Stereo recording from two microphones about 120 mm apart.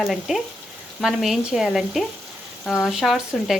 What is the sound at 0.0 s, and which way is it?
Speech, centre (ahead or behind).